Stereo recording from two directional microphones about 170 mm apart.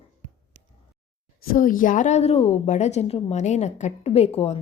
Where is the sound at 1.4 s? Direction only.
55° left (ahead or behind).